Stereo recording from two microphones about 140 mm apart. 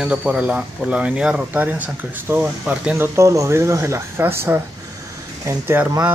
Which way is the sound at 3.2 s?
20° right (ahead or behind).